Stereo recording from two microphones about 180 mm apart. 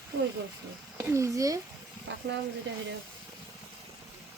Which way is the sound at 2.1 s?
75° right (ahead or behind).